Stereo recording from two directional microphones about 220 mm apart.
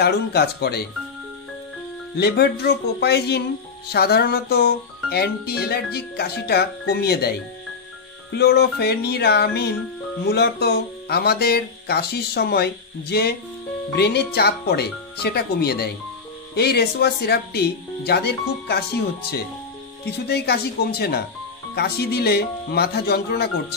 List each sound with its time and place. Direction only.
0.0 s speech: 45° left (ahead or behind)
2.1 s speech: 50° left (ahead or behind)
20.1 s speech: 45° left (ahead or behind)